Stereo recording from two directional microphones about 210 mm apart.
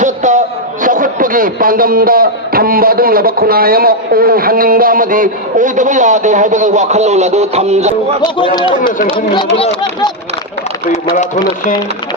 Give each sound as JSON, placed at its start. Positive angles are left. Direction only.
{"t": 0.0, "sound": "a man's voice", "side_deg": -35}
{"t": 8.2, "sound": "speech", "side_deg": 20}